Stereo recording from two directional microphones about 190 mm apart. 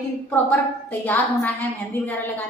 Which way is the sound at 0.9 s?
10° left (ahead or behind).